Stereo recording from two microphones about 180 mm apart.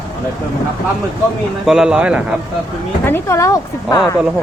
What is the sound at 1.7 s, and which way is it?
Speech, 5° right (ahead or behind).